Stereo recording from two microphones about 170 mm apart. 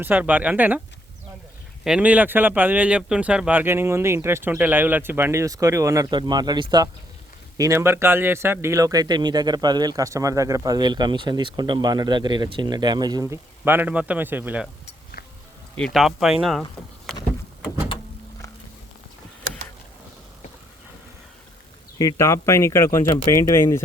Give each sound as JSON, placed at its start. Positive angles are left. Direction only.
{"t": 0.0, "sound": "speech", "side_deg": -10}
{"t": 1.8, "sound": "speech", "side_deg": -5}
{"t": 15.8, "sound": "speech", "side_deg": 0}
{"t": 21.9, "sound": "speech", "side_deg": 20}